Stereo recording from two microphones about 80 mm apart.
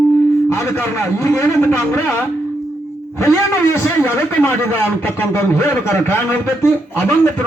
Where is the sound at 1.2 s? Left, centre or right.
Left.